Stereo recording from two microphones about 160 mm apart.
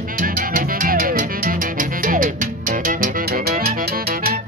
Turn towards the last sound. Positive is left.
turn(degrees=-70)  # may be behind; listen again after turning